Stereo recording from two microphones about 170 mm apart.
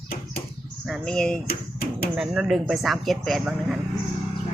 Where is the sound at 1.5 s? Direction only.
60° left (ahead or behind).